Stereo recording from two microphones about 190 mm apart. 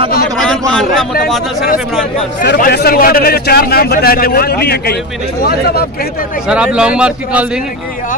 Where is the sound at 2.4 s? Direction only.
55° left (ahead or behind).